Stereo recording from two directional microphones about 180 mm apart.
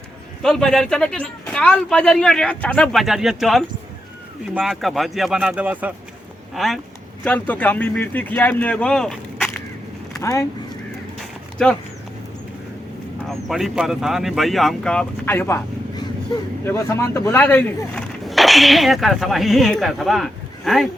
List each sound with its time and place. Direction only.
0.4 s speech: centre (ahead or behind)
10.2 s speech: 15° left (ahead or behind)
11.2 s a sound: 5° left (ahead or behind)
13.2 s speech: centre (ahead or behind)
16.6 s speech: 15° left (ahead or behind); by 20.8 s centre (ahead or behind)